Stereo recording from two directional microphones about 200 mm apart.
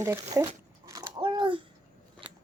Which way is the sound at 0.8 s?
15° right (ahead or behind).